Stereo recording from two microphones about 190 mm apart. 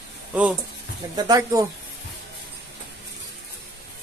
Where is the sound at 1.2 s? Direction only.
20° right (ahead or behind).